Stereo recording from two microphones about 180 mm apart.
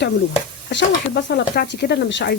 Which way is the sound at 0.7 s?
70° left (ahead or behind).